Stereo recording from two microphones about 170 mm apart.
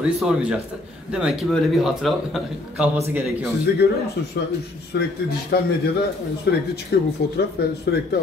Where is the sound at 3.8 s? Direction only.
75° left (ahead or behind).